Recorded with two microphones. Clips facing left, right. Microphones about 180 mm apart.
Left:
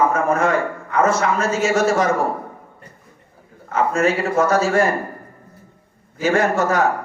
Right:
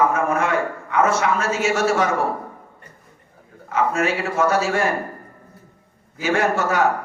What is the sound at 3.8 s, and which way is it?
A man's voice, 40° left (ahead or behind).